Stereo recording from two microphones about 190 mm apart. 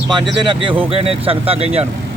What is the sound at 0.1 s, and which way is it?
Speech, 25° right (ahead or behind).